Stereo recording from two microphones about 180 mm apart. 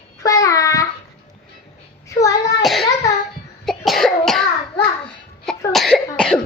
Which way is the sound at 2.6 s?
Centre (ahead or behind).